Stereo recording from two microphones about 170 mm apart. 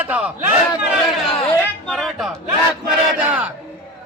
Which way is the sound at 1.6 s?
5° left (ahead or behind).